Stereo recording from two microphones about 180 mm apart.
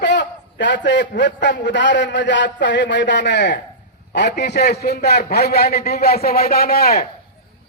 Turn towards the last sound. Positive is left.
turn(degrees=55)  # may be behind; listen again after turning